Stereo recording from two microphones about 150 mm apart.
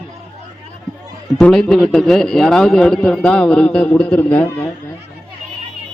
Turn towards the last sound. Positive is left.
turn(degrees=10)  # may be behind; listen again after turning